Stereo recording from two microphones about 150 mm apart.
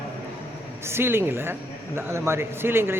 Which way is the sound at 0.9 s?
15° right (ahead or behind).